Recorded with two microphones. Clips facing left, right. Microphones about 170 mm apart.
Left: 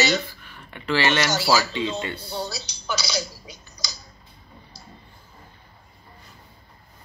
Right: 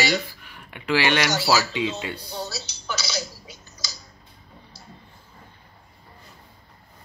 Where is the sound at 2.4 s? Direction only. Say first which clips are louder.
Left 2 dB; 15° left (ahead or behind).